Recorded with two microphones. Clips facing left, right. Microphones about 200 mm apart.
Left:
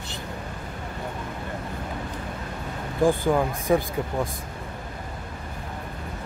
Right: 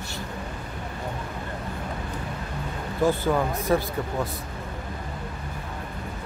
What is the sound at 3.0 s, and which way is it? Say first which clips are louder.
Speech: left 2 dB; 15° left (ahead or behind).